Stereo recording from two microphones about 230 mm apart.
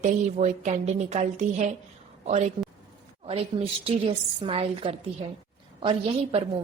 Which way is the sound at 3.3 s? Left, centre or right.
Right.